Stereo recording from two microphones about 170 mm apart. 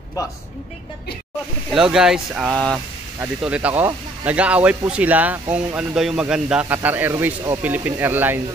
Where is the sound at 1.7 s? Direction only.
5° right (ahead or behind).